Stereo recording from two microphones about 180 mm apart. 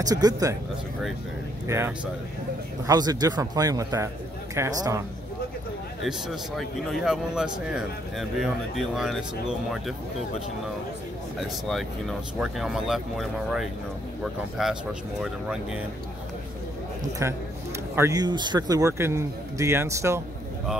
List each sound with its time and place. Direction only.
0.0 s a man's voice: 20° right (ahead or behind)
1.7 s a man's voice: 15° right (ahead or behind)
6.0 s a man's voice: centre (ahead or behind)
11.3 s a man's voice: centre (ahead or behind)
17.2 s speech: 15° right (ahead or behind)